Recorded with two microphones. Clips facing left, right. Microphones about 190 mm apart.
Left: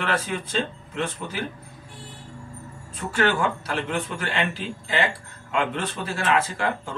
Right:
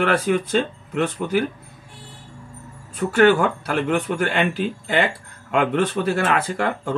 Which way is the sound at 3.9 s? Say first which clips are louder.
Right 7 dB; 60° right (ahead or behind).